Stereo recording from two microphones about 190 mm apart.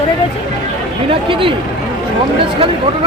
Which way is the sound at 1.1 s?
25° right (ahead or behind).